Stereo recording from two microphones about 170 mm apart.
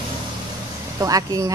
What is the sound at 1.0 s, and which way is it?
Speech, 20° right (ahead or behind).